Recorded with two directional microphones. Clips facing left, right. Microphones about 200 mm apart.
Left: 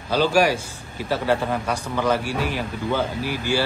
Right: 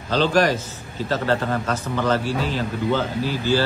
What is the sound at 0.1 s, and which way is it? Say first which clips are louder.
A man's voice: even; 10° left (ahead or behind).